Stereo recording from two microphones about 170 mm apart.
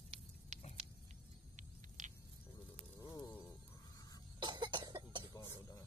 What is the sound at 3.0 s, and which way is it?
Insect, 25° left (ahead or behind).